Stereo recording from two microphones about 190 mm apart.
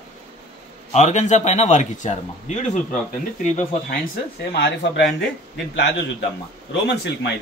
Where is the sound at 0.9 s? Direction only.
40° left (ahead or behind).